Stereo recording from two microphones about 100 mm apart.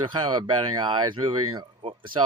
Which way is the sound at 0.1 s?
50° right (ahead or behind).